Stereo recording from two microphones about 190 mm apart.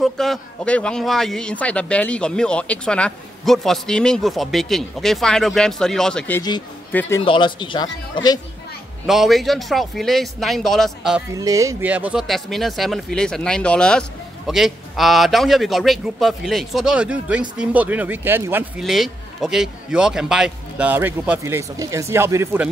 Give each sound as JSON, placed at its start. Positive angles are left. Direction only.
{"t": 0.0, "sound": "a man's voice", "side_deg": 0}
{"t": 7.2, "sound": "speech", "side_deg": 25}
{"t": 9.0, "sound": "a man's voice", "side_deg": 0}
{"t": 11.3, "sound": "a man's voice", "side_deg": -15}